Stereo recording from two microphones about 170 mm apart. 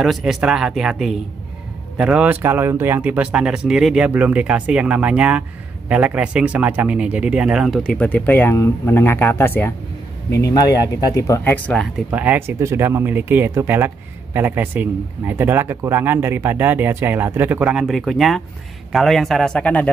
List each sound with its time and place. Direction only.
0.0 s speech: centre (ahead or behind)
12.1 s speech: 10° right (ahead or behind); by 19.9 s 10° left (ahead or behind)